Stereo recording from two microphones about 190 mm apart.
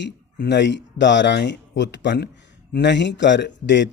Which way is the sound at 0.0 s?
65° left (ahead or behind).